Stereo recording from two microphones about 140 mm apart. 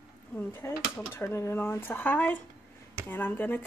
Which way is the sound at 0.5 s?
15° left (ahead or behind).